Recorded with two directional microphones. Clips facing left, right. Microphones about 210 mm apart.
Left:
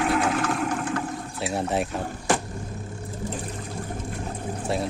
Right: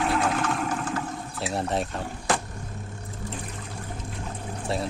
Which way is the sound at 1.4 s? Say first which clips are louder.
Left 2 dB; centre (ahead or behind).